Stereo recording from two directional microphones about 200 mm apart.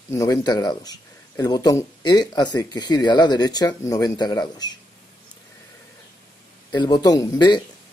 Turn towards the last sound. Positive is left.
turn(degrees=20)  # may be behind; listen again after turning